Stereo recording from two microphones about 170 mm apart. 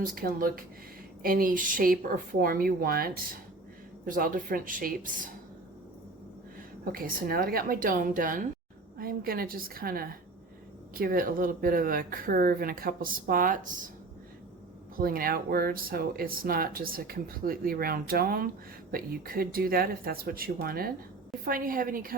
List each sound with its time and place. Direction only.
0.0 s speech: 55° right (ahead or behind)
6.9 s speech: 60° right (ahead or behind)
14.9 s speech: 60° right (ahead or behind)